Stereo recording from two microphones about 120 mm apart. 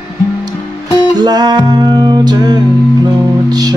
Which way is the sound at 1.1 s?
35° right (ahead or behind).